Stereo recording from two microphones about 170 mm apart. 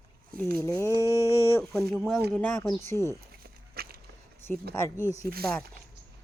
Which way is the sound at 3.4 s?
60° right (ahead or behind).